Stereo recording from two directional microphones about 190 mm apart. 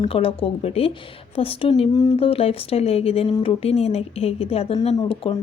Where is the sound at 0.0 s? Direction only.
30° left (ahead or behind).